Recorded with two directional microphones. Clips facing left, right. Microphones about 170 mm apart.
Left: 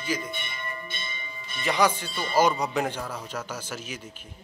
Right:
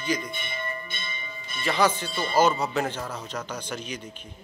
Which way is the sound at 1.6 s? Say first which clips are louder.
Even; 15° left (ahead or behind).